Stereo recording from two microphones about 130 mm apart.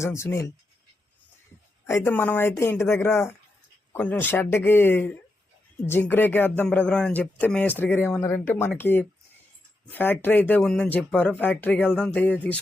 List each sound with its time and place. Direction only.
0.0 s speech: 20° left (ahead or behind)
1.9 s speech: 20° left (ahead or behind)